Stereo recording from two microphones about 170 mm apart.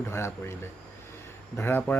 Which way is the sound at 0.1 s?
15° left (ahead or behind).